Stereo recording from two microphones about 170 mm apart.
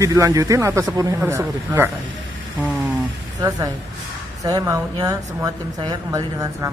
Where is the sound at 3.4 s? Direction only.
20° right (ahead or behind).